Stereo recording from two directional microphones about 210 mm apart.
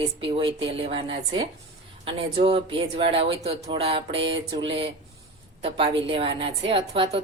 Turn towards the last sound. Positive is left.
turn(degrees=-25)  # may be behind; listen again after turning